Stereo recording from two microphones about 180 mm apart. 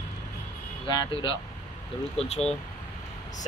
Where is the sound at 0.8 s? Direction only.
25° left (ahead or behind).